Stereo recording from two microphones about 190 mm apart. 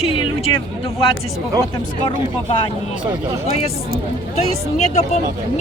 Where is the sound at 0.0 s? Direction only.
30° left (ahead or behind).